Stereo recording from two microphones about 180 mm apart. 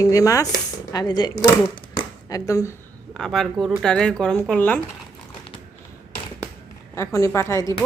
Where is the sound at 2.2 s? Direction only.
20° left (ahead or behind).